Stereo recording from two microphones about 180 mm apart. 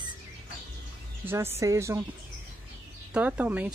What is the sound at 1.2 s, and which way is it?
Speech, 10° right (ahead or behind).